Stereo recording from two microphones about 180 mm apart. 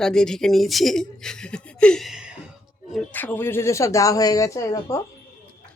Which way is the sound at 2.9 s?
10° left (ahead or behind).